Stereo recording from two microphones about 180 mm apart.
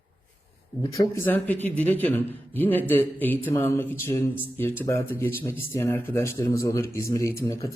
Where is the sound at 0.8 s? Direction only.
20° left (ahead or behind).